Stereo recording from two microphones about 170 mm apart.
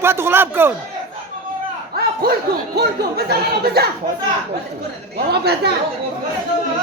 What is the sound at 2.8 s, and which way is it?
Speech, 70° right (ahead or behind).